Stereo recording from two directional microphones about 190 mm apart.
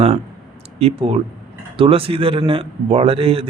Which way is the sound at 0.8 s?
30° right (ahead or behind).